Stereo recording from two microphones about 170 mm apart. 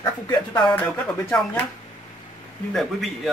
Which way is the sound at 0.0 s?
25° left (ahead or behind).